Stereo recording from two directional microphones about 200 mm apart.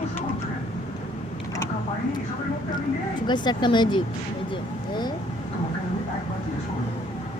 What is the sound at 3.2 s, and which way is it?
Speech, 20° left (ahead or behind).